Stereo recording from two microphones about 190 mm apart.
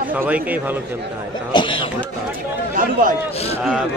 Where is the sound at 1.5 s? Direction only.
25° left (ahead or behind).